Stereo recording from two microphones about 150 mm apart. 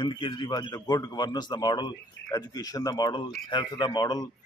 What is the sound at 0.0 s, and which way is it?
A man's voice, 30° left (ahead or behind).